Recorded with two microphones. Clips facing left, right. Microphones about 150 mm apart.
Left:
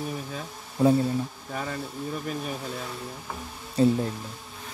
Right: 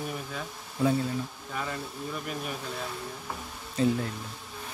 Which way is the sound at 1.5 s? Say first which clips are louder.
Left 2 dB; 40° left (ahead or behind).